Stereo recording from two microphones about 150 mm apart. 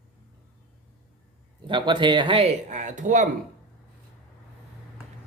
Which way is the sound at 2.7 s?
50° right (ahead or behind).